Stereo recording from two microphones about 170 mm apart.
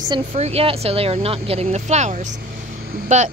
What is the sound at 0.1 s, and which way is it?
Speech, 40° right (ahead or behind).